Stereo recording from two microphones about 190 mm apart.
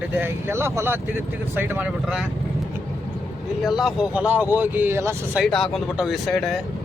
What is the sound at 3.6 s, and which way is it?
Speech, centre (ahead or behind).